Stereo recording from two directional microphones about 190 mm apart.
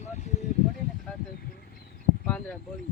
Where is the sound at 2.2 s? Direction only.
5° left (ahead or behind).